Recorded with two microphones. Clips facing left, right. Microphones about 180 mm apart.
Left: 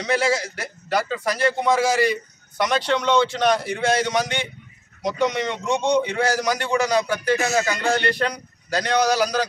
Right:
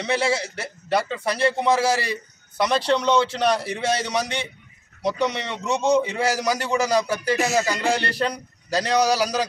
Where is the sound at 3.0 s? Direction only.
5° right (ahead or behind).